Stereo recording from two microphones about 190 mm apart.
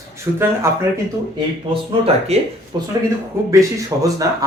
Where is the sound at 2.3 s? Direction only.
35° right (ahead or behind).